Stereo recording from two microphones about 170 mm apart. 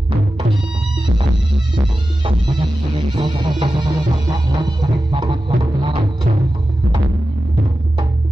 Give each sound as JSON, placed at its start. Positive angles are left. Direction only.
{"t": 3.2, "sound": "music", "side_deg": -30}